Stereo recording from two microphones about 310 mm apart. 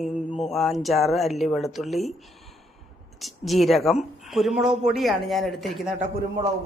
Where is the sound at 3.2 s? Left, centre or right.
Centre.